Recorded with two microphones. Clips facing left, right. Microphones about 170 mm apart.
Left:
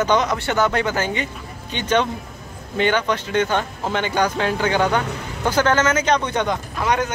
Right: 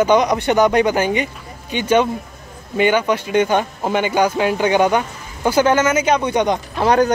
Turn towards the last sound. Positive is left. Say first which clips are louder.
# right 6 dB
turn(degrees=-35)  # may be behind; listen again after turning